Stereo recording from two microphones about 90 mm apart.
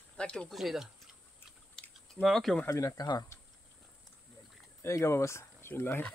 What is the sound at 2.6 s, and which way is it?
Speech, 40° left (ahead or behind).